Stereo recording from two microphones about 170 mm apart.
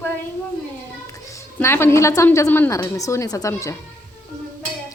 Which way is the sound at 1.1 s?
20° left (ahead or behind).